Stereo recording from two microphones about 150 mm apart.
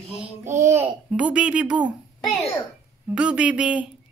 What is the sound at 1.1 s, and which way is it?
Speech, 5° right (ahead or behind).